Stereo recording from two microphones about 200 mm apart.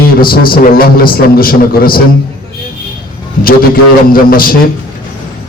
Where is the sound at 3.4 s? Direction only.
45° left (ahead or behind).